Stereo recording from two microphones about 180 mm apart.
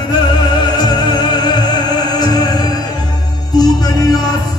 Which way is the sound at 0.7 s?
20° left (ahead or behind).